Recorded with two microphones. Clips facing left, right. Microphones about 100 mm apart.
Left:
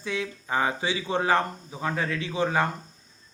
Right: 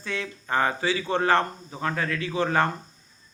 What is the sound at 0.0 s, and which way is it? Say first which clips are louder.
Speech: left 1 dB; 10° left (ahead or behind).